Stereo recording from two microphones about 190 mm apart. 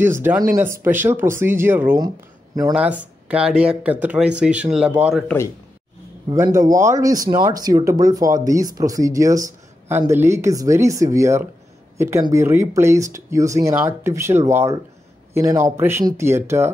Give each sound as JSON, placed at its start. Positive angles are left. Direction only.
{"t": 0.0, "sound": "speech", "side_deg": -10}
{"t": 2.7, "sound": "speech", "side_deg": -5}
{"t": 6.3, "sound": "speech", "side_deg": -15}